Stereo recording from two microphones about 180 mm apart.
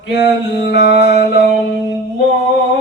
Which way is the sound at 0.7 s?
70° left (ahead or behind).